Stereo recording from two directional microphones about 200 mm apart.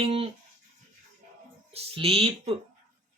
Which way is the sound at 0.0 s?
30° right (ahead or behind).